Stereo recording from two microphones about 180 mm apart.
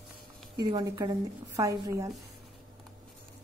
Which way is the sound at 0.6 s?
20° right (ahead or behind).